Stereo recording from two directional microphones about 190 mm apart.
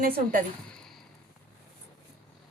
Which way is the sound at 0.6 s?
5° left (ahead or behind).